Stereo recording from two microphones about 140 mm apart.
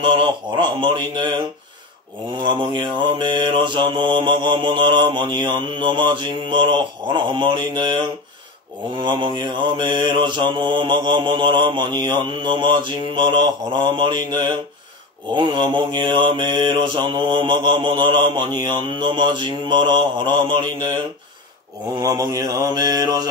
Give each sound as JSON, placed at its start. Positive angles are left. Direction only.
{"t": 0.0, "sound": "mantra", "side_deg": -35}
{"t": 2.4, "sound": "mantra", "side_deg": -35}
{"t": 9.0, "sound": "mantra", "side_deg": -35}